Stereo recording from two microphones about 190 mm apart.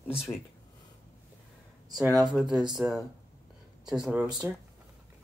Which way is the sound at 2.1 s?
20° right (ahead or behind).